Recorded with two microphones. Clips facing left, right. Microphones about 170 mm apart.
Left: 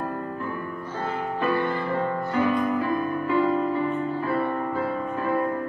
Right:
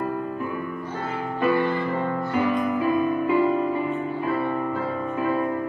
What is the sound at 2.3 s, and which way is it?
Music, 15° right (ahead or behind).